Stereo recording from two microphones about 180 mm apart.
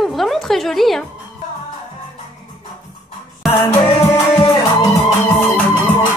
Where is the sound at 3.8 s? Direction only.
25° left (ahead or behind).